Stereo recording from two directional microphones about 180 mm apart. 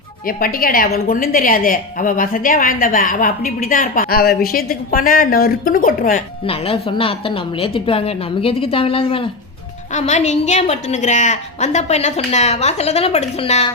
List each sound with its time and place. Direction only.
0.3 s a woman's voice: 55° left (ahead or behind)
6.4 s a woman's voice: 30° left (ahead or behind)